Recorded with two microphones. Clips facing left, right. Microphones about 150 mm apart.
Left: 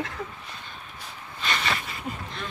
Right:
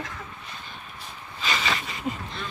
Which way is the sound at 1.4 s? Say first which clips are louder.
Right 1 dB; centre (ahead or behind).